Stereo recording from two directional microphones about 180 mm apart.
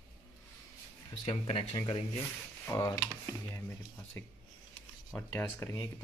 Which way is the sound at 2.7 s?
15° left (ahead or behind).